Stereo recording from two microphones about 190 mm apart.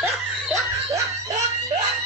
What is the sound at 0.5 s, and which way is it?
Snicker, 15° right (ahead or behind).